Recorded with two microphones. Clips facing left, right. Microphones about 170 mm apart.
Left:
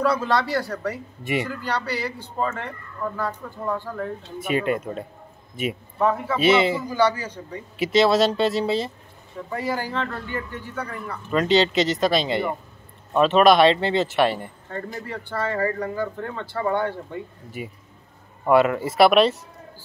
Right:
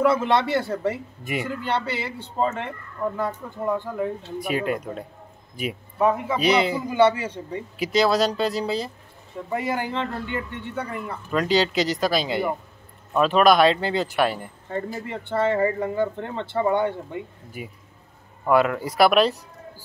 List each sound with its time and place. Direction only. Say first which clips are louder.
0.0 s speech: right 2 dB; 20° right (ahead or behind)
1.2 s speech: left 3 dB; centre (ahead or behind)
1.5 s speech: right 1 dB; 25° right (ahead or behind)
4.4 s speech: left 3 dB; centre (ahead or behind)
6.0 s a man's voice: right 1 dB; 15° right (ahead or behind)
6.3 s speech: left 2 dB; centre (ahead or behind)
6.9 s speech: right 3 dB; 25° right (ahead or behind)
7.7 s speech: left 2 dB; centre (ahead or behind)
9.5 s speech: right 1 dB; 20° right (ahead or behind)
11.2 s speech: left 2 dB; centre (ahead or behind)
14.7 s a man's voice: right 3 dB; 15° right (ahead or behind)
17.6 s speech: left 3 dB; centre (ahead or behind)